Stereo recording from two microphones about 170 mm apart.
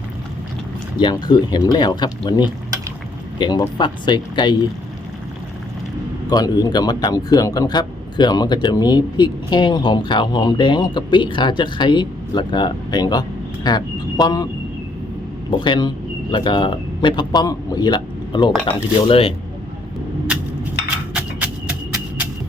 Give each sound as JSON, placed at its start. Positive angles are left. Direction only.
{"t": 0.9, "sound": "a man's voice", "side_deg": 25}
{"t": 6.2, "sound": "a man's voice", "side_deg": 20}
{"t": 15.4, "sound": "a man's voice", "side_deg": 30}
{"t": 21.1, "sound": "a sound", "side_deg": -10}